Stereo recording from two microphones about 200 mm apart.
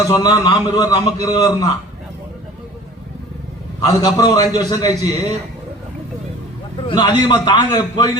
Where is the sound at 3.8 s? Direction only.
20° left (ahead or behind).